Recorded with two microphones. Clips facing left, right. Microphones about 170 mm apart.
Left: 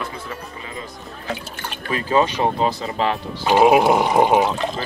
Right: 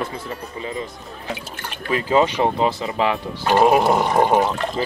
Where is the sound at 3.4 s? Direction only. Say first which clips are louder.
Left 1 dB; 5° left (ahead or behind).